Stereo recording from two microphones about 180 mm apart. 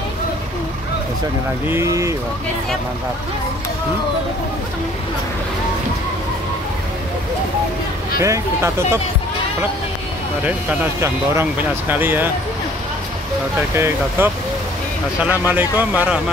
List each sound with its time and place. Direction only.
1.7 s speech: 15° right (ahead or behind)
8.2 s speech: 15° right (ahead or behind)
10.4 s speech: 10° right (ahead or behind)
13.7 s speech: 15° right (ahead or behind)